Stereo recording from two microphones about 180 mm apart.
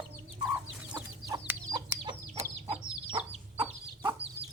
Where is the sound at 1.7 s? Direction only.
25° right (ahead or behind).